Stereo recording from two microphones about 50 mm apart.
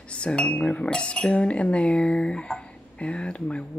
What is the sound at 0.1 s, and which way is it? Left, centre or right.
Speech, left.